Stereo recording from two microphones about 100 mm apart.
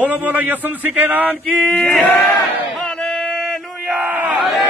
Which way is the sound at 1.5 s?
5° left (ahead or behind).